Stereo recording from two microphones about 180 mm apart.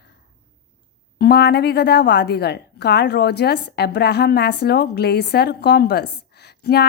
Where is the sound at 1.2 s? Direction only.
65° left (ahead or behind).